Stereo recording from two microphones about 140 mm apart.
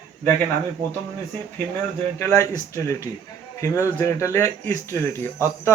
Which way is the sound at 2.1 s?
15° left (ahead or behind).